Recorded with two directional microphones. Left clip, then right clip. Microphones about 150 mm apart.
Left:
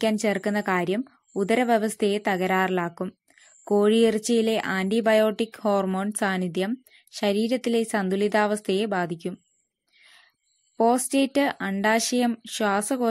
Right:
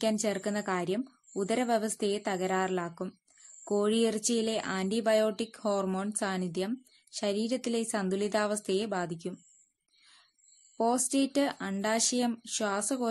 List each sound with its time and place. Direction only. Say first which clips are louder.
0.0 s speech: left 6 dB; 30° left (ahead or behind)
10.8 s speech: left 7 dB; 30° left (ahead or behind)